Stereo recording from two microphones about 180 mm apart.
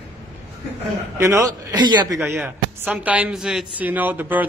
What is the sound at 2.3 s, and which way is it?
Speech, 10° right (ahead or behind).